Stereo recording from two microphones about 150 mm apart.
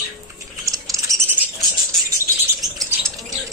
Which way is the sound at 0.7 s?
20° right (ahead or behind).